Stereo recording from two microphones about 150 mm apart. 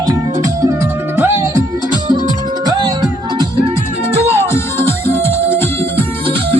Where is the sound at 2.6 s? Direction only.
25° right (ahead or behind).